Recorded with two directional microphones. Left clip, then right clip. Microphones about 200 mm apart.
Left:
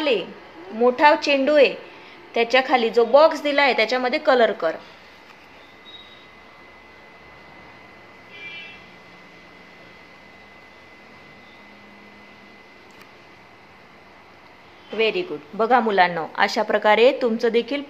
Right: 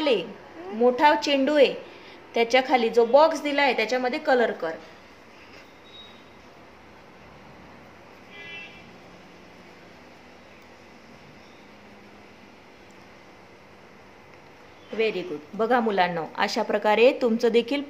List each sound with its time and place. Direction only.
0.0 s a woman's voice: 15° right (ahead or behind); by 4.7 s centre (ahead or behind)
15.0 s a woman's voice: 5° right (ahead or behind)